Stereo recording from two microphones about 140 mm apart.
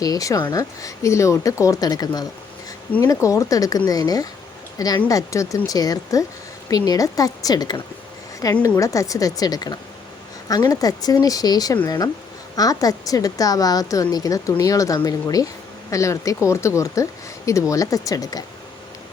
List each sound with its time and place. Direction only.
0.0 s speech: 25° left (ahead or behind)